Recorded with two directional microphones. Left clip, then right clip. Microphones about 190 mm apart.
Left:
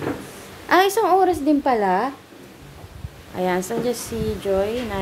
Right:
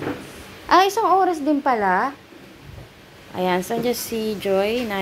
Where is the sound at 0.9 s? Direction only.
15° left (ahead or behind).